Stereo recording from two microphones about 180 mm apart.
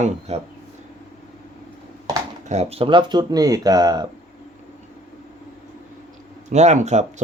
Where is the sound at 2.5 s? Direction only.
35° right (ahead or behind).